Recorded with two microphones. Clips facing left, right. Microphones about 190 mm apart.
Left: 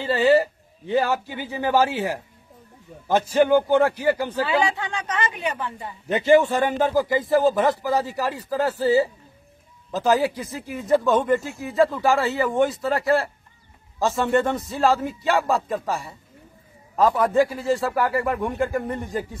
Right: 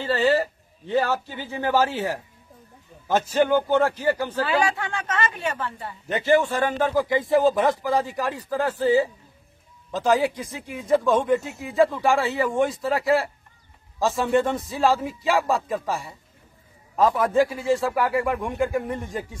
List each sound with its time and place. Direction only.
0.0 s speech: 15° left (ahead or behind)
7.0 s speech: centre (ahead or behind)